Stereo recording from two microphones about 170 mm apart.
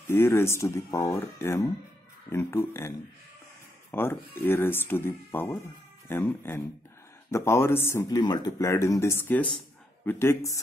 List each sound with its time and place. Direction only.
0.1 s speech: 15° left (ahead or behind)
3.9 s speech: 15° left (ahead or behind)